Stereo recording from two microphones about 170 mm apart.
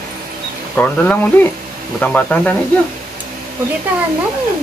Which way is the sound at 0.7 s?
10° left (ahead or behind).